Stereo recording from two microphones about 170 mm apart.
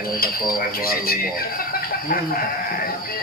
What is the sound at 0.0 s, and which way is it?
Speech, 60° left (ahead or behind).